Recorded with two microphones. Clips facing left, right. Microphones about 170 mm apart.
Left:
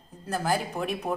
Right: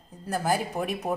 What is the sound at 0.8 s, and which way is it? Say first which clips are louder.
Speech: right 1 dB; 5° right (ahead or behind).